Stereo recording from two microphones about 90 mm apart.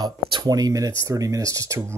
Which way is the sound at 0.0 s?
50° right (ahead or behind).